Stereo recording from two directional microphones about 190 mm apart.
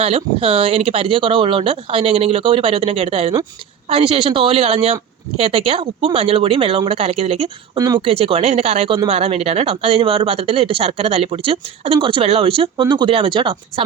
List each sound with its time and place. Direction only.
0.0 s speech: 30° right (ahead or behind)